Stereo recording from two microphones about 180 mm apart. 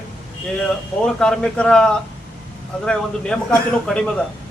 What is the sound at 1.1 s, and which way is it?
A man's voice, 5° left (ahead or behind).